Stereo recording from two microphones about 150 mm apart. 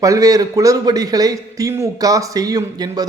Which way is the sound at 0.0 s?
20° right (ahead or behind).